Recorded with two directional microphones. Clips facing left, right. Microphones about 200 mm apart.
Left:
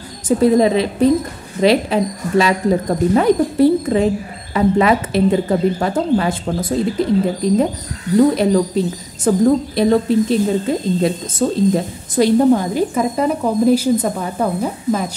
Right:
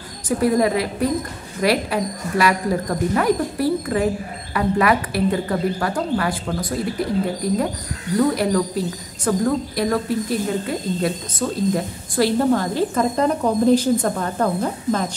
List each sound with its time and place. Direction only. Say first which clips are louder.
0.4 s a woman's voice: left 5 dB; 25° left (ahead or behind)